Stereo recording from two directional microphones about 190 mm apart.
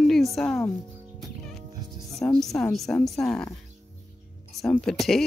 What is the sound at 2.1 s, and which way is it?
Speech, centre (ahead or behind).